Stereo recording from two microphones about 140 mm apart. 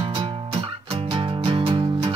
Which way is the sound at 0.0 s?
40° right (ahead or behind).